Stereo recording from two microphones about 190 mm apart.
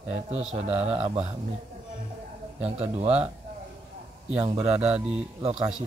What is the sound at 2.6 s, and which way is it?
Speech, 35° right (ahead or behind).